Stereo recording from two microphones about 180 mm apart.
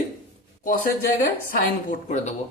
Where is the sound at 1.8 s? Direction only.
40° left (ahead or behind).